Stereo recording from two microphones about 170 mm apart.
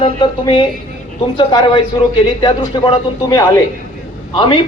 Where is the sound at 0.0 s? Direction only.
30° left (ahead or behind).